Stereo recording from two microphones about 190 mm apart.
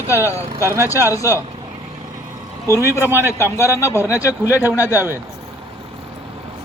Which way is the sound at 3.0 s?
10° right (ahead or behind).